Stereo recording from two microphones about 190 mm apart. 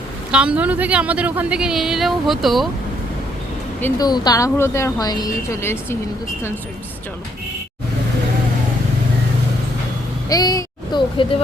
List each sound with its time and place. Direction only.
0.3 s speech: 5° right (ahead or behind)
3.8 s a woman's voice: 15° left (ahead or behind)
10.2 s speech: 20° left (ahead or behind)